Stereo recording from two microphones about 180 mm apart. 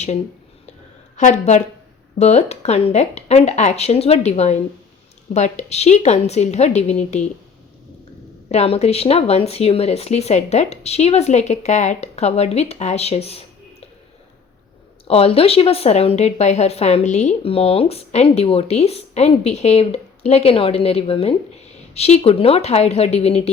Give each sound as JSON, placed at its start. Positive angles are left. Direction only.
{"t": 1.1, "sound": "a woman's voice", "side_deg": 40}
{"t": 8.4, "sound": "speech", "side_deg": 35}
{"t": 15.0, "sound": "speech", "side_deg": 35}